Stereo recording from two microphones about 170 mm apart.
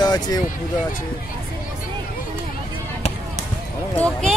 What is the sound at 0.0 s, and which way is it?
Vehicle, 25° left (ahead or behind).